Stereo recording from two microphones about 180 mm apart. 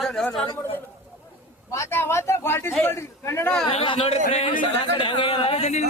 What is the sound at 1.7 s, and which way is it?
Speech, 15° left (ahead or behind).